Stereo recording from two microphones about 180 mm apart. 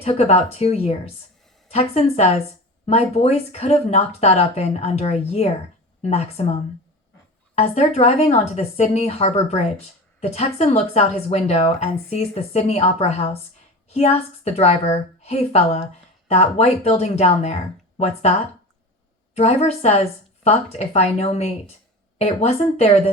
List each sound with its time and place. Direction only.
0.0 s speech: 35° left (ahead or behind)
19.4 s speech: 35° left (ahead or behind)